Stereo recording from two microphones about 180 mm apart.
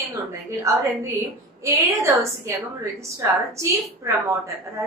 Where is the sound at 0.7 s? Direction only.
15° right (ahead or behind).